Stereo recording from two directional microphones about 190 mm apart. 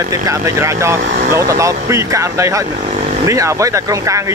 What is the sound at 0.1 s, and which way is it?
Speech, 15° right (ahead or behind).